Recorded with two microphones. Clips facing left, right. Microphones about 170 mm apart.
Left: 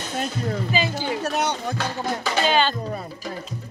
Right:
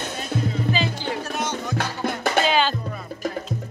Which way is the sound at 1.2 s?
65° left (ahead or behind).